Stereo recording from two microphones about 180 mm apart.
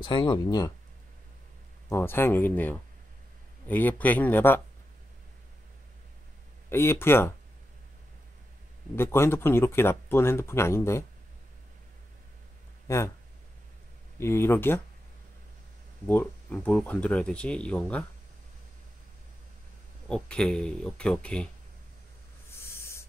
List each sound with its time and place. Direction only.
0.0 s speech: 25° left (ahead or behind)
1.9 s speech: 15° left (ahead or behind)
6.7 s speech: 15° left (ahead or behind)
8.9 s speech: 15° left (ahead or behind)
12.8 s speech: 15° left (ahead or behind)
14.2 s speech: 15° left (ahead or behind)
16.1 s speech: 10° left (ahead or behind)
20.1 s speech: 5° left (ahead or behind)
22.6 s a sound: 15° left (ahead or behind)